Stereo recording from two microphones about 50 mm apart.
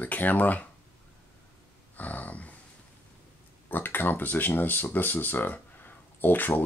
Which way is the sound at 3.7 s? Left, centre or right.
Left.